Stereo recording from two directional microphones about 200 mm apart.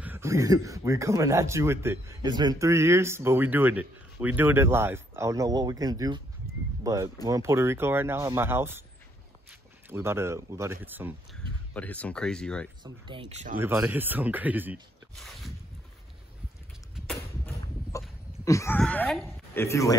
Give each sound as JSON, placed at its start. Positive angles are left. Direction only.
{"t": 0.0, "sound": "speech", "side_deg": -10}
{"t": 9.8, "sound": "speech", "side_deg": -10}
{"t": 11.7, "sound": "speech", "side_deg": 5}
{"t": 12.8, "sound": "speech", "side_deg": -25}
{"t": 13.6, "sound": "speech", "side_deg": -10}
{"t": 17.9, "sound": "chicken", "side_deg": 15}
{"t": 18.4, "sound": "speech", "side_deg": 15}